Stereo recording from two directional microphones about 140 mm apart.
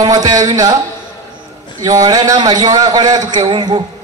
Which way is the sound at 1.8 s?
25° right (ahead or behind).